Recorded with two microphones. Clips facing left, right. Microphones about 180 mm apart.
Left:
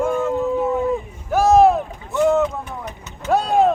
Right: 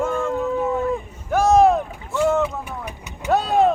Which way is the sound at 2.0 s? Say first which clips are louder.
Left 3 dB; 20° left (ahead or behind).